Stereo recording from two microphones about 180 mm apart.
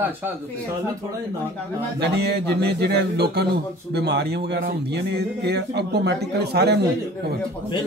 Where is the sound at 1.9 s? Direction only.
65° right (ahead or behind).